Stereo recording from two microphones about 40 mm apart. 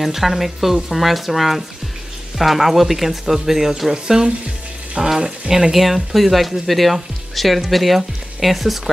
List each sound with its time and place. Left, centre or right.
0.0 s speech: centre; by 5.1 s right
5.5 s speech: centre